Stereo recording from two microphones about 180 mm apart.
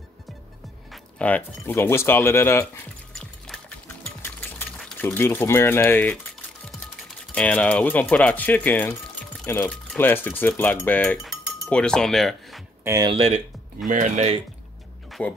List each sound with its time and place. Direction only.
0.9 s speech: 5° left (ahead or behind)
3.2 s music: 5° left (ahead or behind)
7.1 s speech: 5° left (ahead or behind)
9.4 s cutlery: 10° left (ahead or behind)
12.8 s speech: 15° right (ahead or behind)
13.1 s speech: 35° right (ahead or behind)
15.0 s a sound: centre (ahead or behind)